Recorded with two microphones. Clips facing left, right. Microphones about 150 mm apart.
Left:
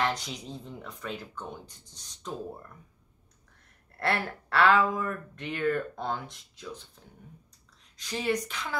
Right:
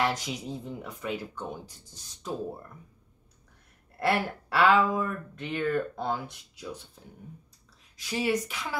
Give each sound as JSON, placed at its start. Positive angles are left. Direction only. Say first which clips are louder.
{"t": 0.0, "sound": "speech", "louder": "right 2 dB", "side_deg": -10}
{"t": 4.0, "sound": "speech", "louder": "right 3 dB", "side_deg": -10}
{"t": 8.0, "sound": "speech", "louder": "right 2 dB", "side_deg": -10}